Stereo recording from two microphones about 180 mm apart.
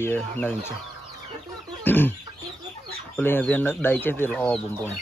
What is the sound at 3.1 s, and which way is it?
Speech, 10° left (ahead or behind).